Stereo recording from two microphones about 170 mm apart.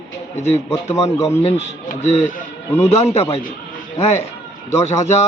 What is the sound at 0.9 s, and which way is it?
Speech, 20° left (ahead or behind).